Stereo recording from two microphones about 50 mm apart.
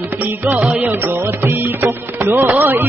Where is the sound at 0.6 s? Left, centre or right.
Right.